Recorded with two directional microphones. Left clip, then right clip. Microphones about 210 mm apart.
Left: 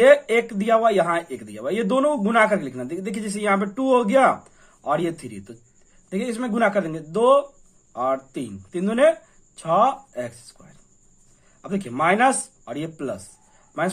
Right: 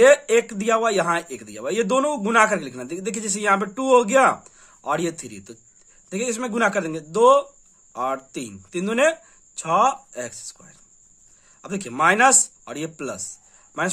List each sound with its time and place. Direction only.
0.0 s speech: 25° right (ahead or behind)